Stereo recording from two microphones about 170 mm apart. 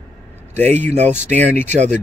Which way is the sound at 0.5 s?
10° left (ahead or behind).